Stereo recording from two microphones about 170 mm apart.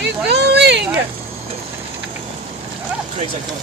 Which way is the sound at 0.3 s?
80° right.